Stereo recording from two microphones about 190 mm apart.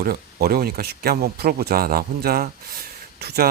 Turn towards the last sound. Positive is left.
turn(degrees=-55)  # may be behind; listen again after turning